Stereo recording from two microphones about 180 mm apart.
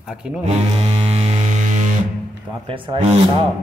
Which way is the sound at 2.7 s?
30° right (ahead or behind).